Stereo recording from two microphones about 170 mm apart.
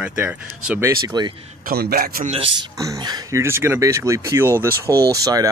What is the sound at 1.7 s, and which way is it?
Speech, 65° right (ahead or behind).